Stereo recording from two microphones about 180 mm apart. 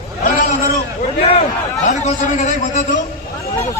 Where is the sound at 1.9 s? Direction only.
40° left (ahead or behind).